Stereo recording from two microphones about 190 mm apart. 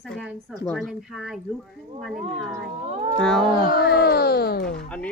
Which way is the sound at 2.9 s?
35° right (ahead or behind).